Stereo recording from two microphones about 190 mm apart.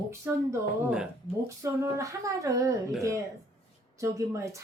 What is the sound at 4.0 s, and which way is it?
Speech, 15° right (ahead or behind).